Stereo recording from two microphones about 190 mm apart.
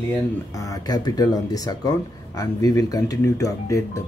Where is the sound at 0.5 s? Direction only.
15° left (ahead or behind).